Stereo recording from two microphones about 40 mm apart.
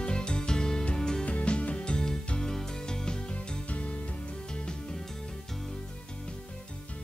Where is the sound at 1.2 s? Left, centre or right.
Left.